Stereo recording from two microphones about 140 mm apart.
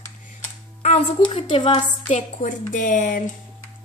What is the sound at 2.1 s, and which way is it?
Speech, 60° left (ahead or behind).